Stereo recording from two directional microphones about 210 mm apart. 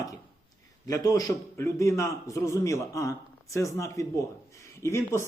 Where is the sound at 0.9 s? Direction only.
15° left (ahead or behind).